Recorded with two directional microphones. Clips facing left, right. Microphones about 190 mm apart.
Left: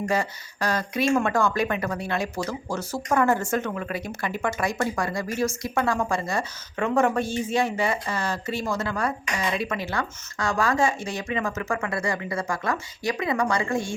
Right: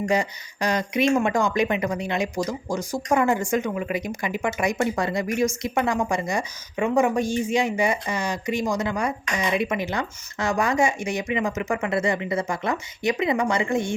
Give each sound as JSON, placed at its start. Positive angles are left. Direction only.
{"t": 0.1, "sound": "a woman's voice", "side_deg": -15}